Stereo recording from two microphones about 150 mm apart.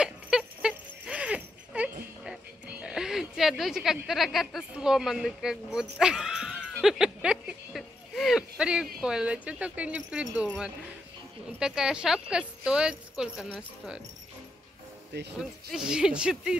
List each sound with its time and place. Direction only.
0.0 s a sound: 5° right (ahead or behind)
2.2 s music: 5° right (ahead or behind)
9.0 s speech: 5° right (ahead or behind)
11.6 s speech: 5° right (ahead or behind)
15.3 s speech: 5° right (ahead or behind)